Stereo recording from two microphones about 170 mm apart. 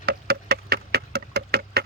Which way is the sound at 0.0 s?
65° right (ahead or behind).